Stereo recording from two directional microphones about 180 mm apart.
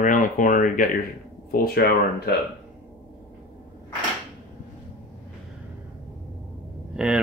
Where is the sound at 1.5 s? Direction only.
60° left (ahead or behind).